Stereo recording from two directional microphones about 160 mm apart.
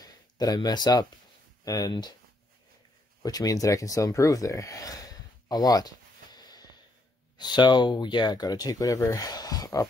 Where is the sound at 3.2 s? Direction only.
25° left (ahead or behind).